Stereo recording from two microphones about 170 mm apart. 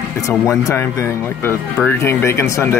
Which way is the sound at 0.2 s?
15° left (ahead or behind).